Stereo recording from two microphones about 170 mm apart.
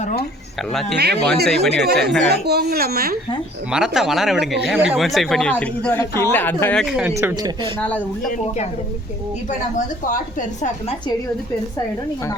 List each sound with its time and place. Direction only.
0.7 s speech: centre (ahead or behind)
2.3 s speech: 70° right (ahead or behind)
3.7 s speech: 5° right (ahead or behind)
6.8 s speech: 5° right (ahead or behind)
7.2 s speech: 15° right (ahead or behind)
7.8 s speech: 10° left (ahead or behind)
9.5 s a woman's voice: 50° left (ahead or behind)